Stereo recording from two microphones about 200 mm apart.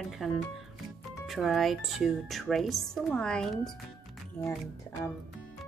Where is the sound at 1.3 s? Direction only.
Centre (ahead or behind).